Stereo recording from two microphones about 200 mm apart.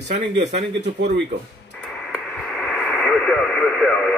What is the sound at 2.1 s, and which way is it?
Radio, centre (ahead or behind).